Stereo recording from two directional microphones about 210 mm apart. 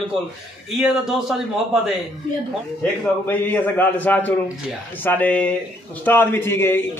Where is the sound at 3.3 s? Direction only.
10° left (ahead or behind).